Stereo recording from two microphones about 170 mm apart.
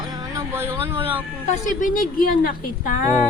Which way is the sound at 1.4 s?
45° left (ahead or behind).